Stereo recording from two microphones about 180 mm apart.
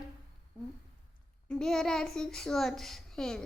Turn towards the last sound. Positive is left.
turn(degrees=5)  # may be behind; listen again after turning